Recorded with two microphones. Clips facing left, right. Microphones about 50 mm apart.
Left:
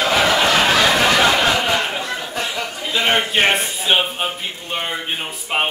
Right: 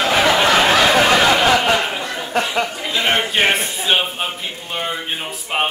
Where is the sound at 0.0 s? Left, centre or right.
Centre.